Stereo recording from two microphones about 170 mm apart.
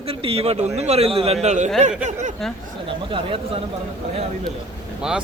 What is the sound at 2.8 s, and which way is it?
Speech, 30° right (ahead or behind).